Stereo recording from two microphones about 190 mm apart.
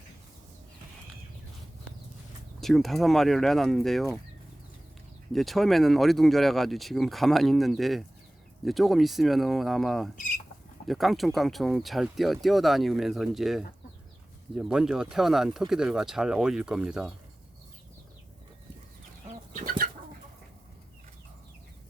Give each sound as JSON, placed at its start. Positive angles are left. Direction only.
{"t": 2.6, "sound": "speech", "side_deg": 0}
{"t": 5.3, "sound": "speech", "side_deg": 0}
{"t": 19.5, "sound": "bird", "side_deg": -50}